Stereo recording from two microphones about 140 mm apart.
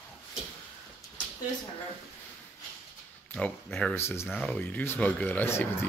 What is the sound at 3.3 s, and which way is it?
Speech, 15° left (ahead or behind).